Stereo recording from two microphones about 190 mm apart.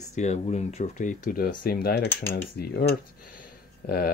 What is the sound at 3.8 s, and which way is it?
Cutlery, 55° left (ahead or behind).